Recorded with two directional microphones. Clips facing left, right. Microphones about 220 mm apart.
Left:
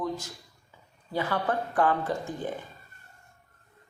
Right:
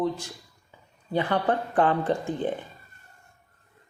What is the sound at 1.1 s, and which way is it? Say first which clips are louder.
Speech: right 4 dB; 20° right (ahead or behind).